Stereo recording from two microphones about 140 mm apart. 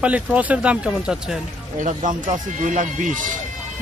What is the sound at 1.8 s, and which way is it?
Speech, 65° right (ahead or behind).